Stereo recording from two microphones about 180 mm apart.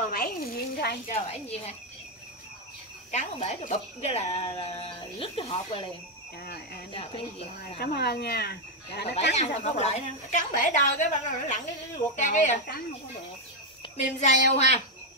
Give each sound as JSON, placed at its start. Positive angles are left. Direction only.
{"t": 0.1, "sound": "a sound", "side_deg": 60}
{"t": 1.1, "sound": "speech", "side_deg": 35}
{"t": 3.1, "sound": "speech", "side_deg": 40}
{"t": 6.4, "sound": "speech", "side_deg": 60}
{"t": 6.9, "sound": "speech", "side_deg": 30}
{"t": 7.8, "sound": "speech", "side_deg": 60}
{"t": 9.3, "sound": "a woman's voice", "side_deg": 35}
{"t": 13.8, "sound": "a sound", "side_deg": 30}
{"t": 14.2, "sound": "speech", "side_deg": 35}